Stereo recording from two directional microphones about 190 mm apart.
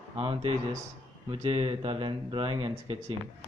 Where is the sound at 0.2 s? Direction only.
30° right (ahead or behind).